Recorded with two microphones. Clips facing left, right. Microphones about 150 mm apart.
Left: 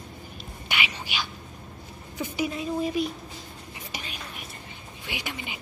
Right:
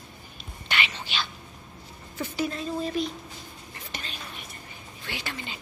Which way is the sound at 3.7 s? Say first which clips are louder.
Left 1 dB; 10° left (ahead or behind).